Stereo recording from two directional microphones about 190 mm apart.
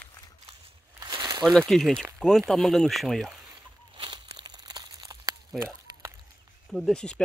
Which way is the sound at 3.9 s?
25° right (ahead or behind).